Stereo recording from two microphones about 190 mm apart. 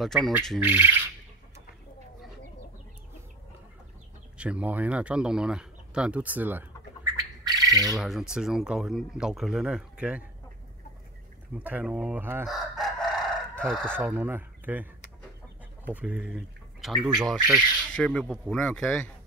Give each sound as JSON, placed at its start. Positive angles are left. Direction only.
{"t": 0.0, "sound": "speech", "side_deg": 0}
{"t": 0.7, "sound": "speech", "side_deg": -10}
{"t": 4.4, "sound": "speech", "side_deg": -5}
{"t": 7.4, "sound": "squawk", "side_deg": -20}
{"t": 8.0, "sound": "speech", "side_deg": 0}
{"t": 11.5, "sound": "speech", "side_deg": -10}
{"t": 12.4, "sound": "chicken", "side_deg": 0}
{"t": 13.9, "sound": "speech", "side_deg": -10}